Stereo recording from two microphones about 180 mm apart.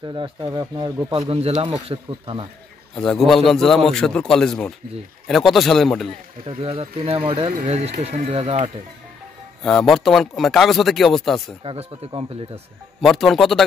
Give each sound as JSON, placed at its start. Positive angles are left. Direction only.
{"t": 0.0, "sound": "speech", "side_deg": -25}
{"t": 1.2, "sound": "speech", "side_deg": -35}
{"t": 3.0, "sound": "a man's voice", "side_deg": 0}
{"t": 6.4, "sound": "speech", "side_deg": -30}
{"t": 9.6, "sound": "a man's voice", "side_deg": 0}
{"t": 11.6, "sound": "speech", "side_deg": -35}
{"t": 13.0, "sound": "a man's voice", "side_deg": 0}